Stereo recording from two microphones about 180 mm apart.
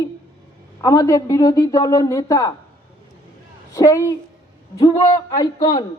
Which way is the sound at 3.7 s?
15° left (ahead or behind).